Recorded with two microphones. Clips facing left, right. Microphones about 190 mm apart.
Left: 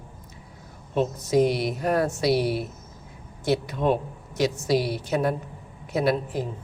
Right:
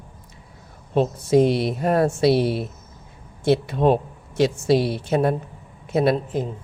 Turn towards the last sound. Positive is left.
turn(degrees=-25)  # may be behind; listen again after turning